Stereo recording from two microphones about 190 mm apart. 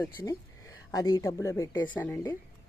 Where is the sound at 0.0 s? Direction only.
15° left (ahead or behind).